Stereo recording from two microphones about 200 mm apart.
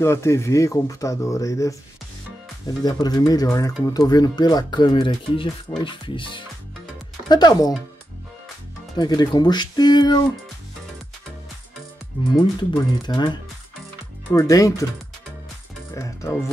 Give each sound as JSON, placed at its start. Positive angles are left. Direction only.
{"t": 0.0, "sound": "speech", "side_deg": 15}
{"t": 8.9, "sound": "speech", "side_deg": 20}
{"t": 12.5, "sound": "speech", "side_deg": 20}
{"t": 15.9, "sound": "speech", "side_deg": 15}